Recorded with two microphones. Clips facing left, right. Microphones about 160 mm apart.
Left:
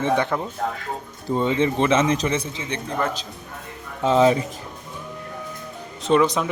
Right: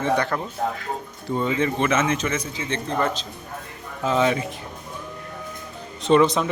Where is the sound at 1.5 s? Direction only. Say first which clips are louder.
Left 3 dB; 30° left (ahead or behind); by 3.2 s 10° left (ahead or behind).